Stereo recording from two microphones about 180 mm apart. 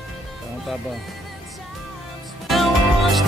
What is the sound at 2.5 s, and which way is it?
Music, centre (ahead or behind).